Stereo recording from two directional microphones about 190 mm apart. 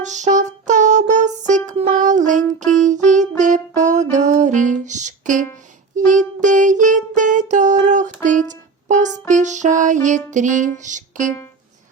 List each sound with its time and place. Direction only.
0.0 s music: 40° right (ahead or behind)